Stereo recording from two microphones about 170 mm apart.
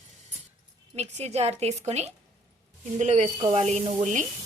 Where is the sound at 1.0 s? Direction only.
40° right (ahead or behind).